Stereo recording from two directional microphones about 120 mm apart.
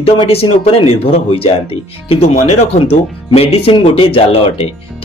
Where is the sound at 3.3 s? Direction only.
55° left (ahead or behind).